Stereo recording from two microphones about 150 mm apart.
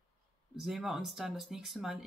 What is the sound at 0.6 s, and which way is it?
Speech, centre (ahead or behind).